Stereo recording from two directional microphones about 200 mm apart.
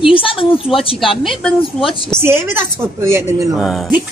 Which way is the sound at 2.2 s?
10° right (ahead or behind).